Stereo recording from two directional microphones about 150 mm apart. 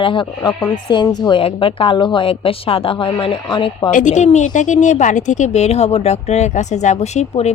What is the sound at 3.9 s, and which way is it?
Speech, 55° left (ahead or behind).